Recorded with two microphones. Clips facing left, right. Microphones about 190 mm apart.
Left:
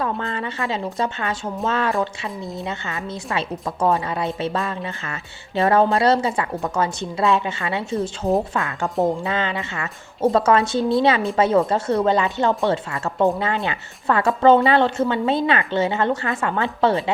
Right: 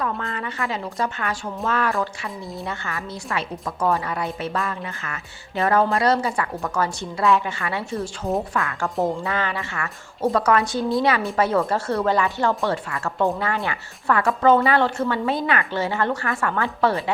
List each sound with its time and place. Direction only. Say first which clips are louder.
0.0 s speech: left 2 dB; 30° left (ahead or behind)